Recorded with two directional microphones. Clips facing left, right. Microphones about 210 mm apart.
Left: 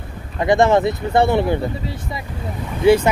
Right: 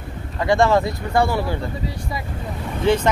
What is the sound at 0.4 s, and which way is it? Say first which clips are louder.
Speech: left 2 dB; 20° left (ahead or behind).